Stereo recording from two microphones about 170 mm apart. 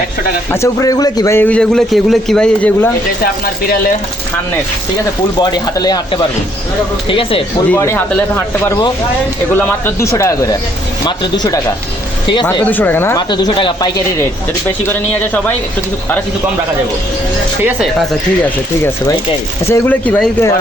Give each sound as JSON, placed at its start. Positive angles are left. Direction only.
{"t": 0.5, "sound": "a man's voice", "side_deg": 20}
{"t": 5.4, "sound": "speech", "side_deg": 25}
{"t": 7.7, "sound": "a man's voice", "side_deg": 15}
{"t": 12.7, "sound": "a man's voice", "side_deg": 10}
{"t": 13.1, "sound": "speech", "side_deg": 25}
{"t": 14.8, "sound": "a man's voice", "side_deg": 10}
{"t": 19.6, "sound": "a man's voice", "side_deg": 15}